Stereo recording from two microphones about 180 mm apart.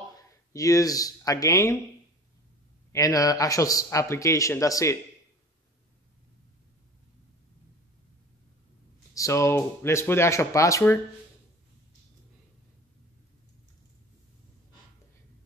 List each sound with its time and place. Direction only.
0.1 s speech: 20° left (ahead or behind)
2.9 s a man's voice: 20° left (ahead or behind)
9.1 s a man's voice: 15° left (ahead or behind)